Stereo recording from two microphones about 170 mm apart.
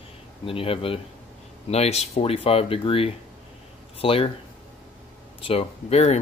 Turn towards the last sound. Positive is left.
turn(degrees=40)  # may be behind; listen again after turning